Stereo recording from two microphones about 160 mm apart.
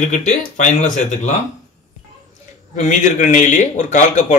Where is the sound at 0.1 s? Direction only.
50° left (ahead or behind).